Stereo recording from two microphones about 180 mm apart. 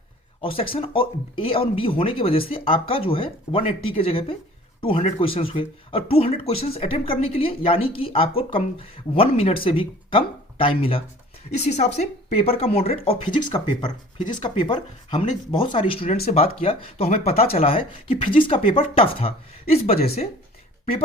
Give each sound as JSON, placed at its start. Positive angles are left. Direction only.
{"t": 0.4, "sound": "speech", "side_deg": 30}